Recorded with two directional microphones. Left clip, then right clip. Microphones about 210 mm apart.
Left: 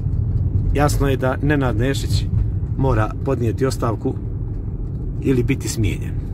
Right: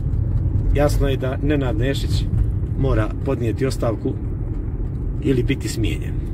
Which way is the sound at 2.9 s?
30° left (ahead or behind).